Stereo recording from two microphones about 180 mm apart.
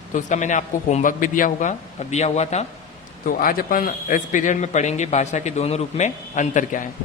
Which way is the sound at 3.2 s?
50° left (ahead or behind).